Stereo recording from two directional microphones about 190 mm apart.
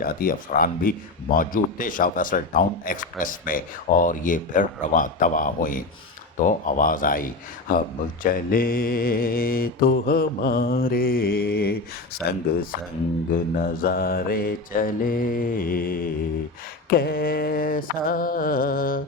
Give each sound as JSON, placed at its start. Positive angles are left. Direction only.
{"t": 0.0, "sound": "speech", "side_deg": 50}
{"t": 13.6, "sound": "speech", "side_deg": 50}